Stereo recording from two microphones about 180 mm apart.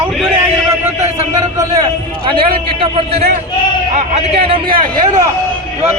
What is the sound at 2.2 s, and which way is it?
A man's voice, 30° right (ahead or behind).